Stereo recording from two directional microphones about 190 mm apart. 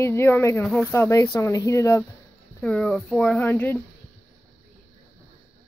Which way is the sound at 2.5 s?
5° left (ahead or behind).